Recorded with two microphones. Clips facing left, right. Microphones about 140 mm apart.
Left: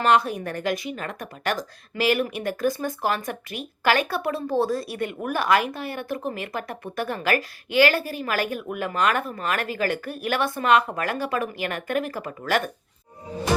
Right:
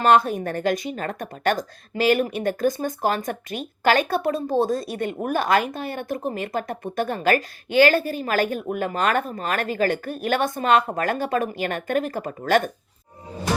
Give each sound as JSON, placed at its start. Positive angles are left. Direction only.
{"t": 0.0, "sound": "speech", "side_deg": -45}
{"t": 2.0, "sound": "speech", "side_deg": -25}
{"t": 3.0, "sound": "speech", "side_deg": -45}
{"t": 3.5, "sound": "speech", "side_deg": -30}
{"t": 7.2, "sound": "speech", "side_deg": -40}
{"t": 7.9, "sound": "speech", "side_deg": -25}
{"t": 10.6, "sound": "speech", "side_deg": -35}
{"t": 10.9, "sound": "speech", "side_deg": -45}